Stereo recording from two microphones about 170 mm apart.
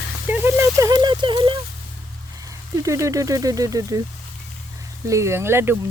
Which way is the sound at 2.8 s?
20° right (ahead or behind).